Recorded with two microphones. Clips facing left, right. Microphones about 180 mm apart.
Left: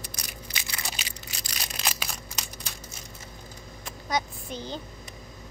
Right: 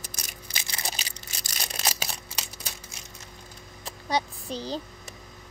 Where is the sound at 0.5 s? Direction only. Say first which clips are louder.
Right 2 dB; 35° right (ahead or behind).